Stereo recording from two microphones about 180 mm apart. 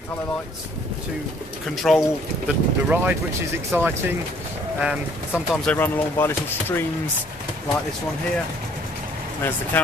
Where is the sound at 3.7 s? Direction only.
10° right (ahead or behind).